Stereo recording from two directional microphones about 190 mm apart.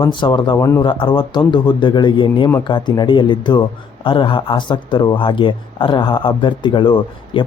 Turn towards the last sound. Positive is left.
turn(degrees=25)  # may be behind; listen again after turning